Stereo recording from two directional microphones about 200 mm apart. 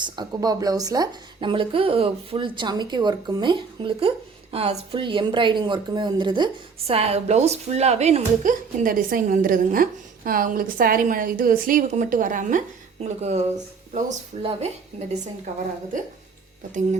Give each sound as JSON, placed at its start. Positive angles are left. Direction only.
{"t": 0.0, "sound": "a woman's voice", "side_deg": -20}